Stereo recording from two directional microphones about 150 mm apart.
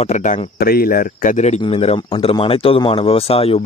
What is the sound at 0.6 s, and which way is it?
Speech, 90° left.